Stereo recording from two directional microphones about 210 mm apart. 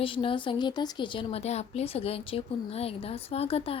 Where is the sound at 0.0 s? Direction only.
25° left (ahead or behind).